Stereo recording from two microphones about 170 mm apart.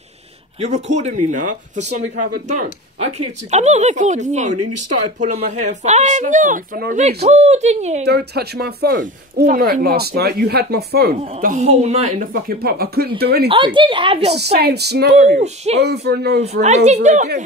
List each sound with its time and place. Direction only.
0.6 s speech: 40° right (ahead or behind)
7.2 s speech: 40° right (ahead or behind)
8.0 s speech: 70° right (ahead or behind)
11.4 s speech: 40° right (ahead or behind); by 13.5 s 70° right (ahead or behind)
13.7 s speech: 30° right (ahead or behind)
14.3 s speech: 75° right (ahead or behind)
15.3 s speech: 40° right (ahead or behind)
15.8 s speech: 75° right (ahead or behind)
16.6 s speech: 40° right (ahead or behind)